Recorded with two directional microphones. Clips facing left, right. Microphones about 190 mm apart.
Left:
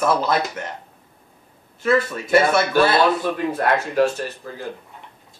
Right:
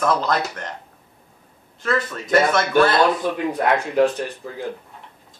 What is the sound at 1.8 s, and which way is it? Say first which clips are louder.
Speech: left 4 dB; 10° left (ahead or behind).